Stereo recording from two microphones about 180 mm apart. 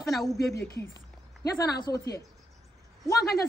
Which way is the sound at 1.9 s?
15° left (ahead or behind).